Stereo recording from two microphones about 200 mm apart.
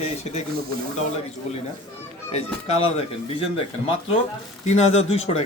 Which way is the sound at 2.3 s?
30° left (ahead or behind).